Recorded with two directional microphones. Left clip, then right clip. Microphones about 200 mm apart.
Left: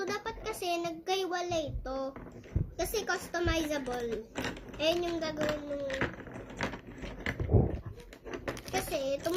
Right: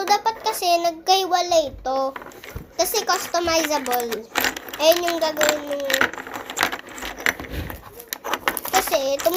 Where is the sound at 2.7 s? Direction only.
15° left (ahead or behind).